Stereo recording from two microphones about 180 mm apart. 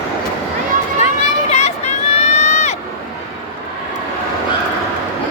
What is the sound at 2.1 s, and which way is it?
Crowd, 35° left (ahead or behind).